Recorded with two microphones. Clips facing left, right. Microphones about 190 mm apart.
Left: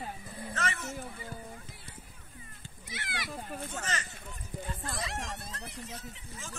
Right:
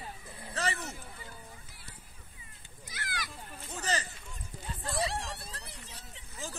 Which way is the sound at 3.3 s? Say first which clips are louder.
Left 8 dB; 55° left (ahead or behind).